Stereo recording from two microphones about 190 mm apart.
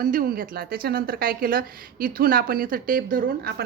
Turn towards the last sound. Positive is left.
turn(degrees=-50)  # may be behind; listen again after turning